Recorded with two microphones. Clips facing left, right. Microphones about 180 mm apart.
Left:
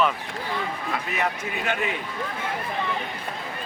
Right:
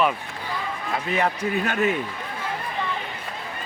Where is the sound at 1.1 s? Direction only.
35° right (ahead or behind).